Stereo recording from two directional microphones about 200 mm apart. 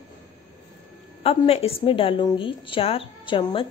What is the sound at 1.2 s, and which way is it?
A woman's voice, 30° left (ahead or behind).